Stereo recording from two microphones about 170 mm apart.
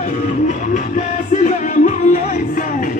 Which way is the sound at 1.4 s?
45° left (ahead or behind).